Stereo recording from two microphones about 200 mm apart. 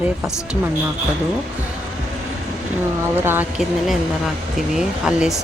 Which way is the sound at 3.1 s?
10° right (ahead or behind).